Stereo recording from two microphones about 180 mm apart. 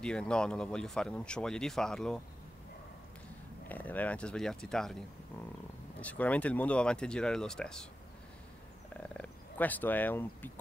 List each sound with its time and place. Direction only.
0.0 s speech: 5° left (ahead or behind)
3.6 s speech: 10° left (ahead or behind)
5.9 s speech: 10° left (ahead or behind)
8.9 s frog: 5° left (ahead or behind)